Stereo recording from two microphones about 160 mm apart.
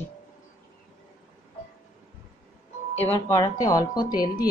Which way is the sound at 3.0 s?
15° left (ahead or behind).